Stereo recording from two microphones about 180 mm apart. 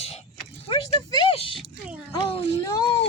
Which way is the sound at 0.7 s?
25° left (ahead or behind).